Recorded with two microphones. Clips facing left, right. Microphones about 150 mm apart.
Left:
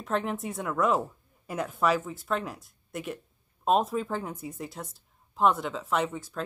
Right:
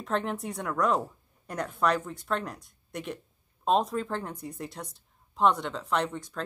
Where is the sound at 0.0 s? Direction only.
Centre (ahead or behind).